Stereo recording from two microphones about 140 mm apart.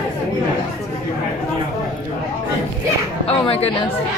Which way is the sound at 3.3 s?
45° left (ahead or behind).